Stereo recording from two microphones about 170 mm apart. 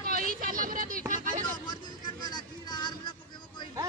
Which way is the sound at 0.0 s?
55° right (ahead or behind).